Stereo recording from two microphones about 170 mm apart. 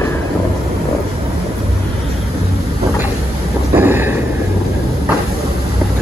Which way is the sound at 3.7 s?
10° right (ahead or behind).